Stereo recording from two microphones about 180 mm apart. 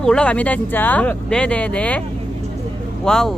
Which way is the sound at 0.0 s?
5° left (ahead or behind).